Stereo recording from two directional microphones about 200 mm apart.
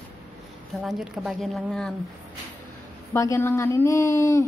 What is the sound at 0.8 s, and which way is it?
A woman's voice, centre (ahead or behind).